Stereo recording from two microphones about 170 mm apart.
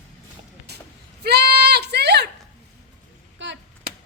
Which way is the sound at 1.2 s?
70° right (ahead or behind).